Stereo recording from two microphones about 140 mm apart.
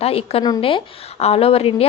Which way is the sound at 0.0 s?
45° left (ahead or behind).